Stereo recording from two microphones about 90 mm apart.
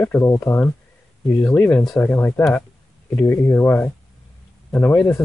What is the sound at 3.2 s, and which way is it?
Speech, 30° left (ahead or behind).